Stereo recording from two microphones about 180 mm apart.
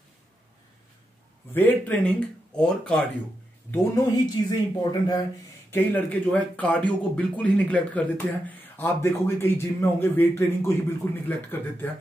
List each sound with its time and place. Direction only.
1.5 s speech: 10° left (ahead or behind)
3.7 s speech: 20° left (ahead or behind)
5.7 s speech: 10° left (ahead or behind)